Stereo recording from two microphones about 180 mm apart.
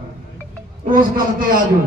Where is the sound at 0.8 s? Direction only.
50° right (ahead or behind).